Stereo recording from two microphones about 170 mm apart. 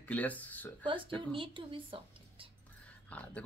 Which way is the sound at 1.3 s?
30° right (ahead or behind).